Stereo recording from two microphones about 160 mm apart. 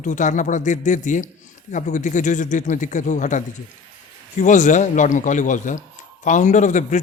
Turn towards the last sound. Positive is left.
turn(degrees=50)  # may be behind; listen again after turning